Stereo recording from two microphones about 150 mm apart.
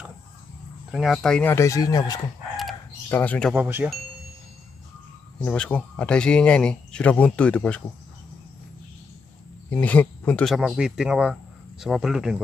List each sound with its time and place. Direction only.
0.9 s speech: centre (ahead or behind)
1.5 s speech: 20° left (ahead or behind)
3.1 s speech: 10° left (ahead or behind)
3.5 s speech: 10° right (ahead or behind)
5.4 s speech: 10° left (ahead or behind)
9.7 s speech: 10° left (ahead or behind)